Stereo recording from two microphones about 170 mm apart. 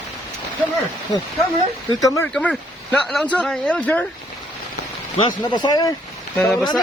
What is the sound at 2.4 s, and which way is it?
Speech, 5° left (ahead or behind).